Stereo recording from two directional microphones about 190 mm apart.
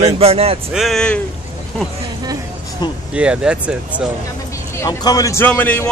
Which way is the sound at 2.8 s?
25° left (ahead or behind).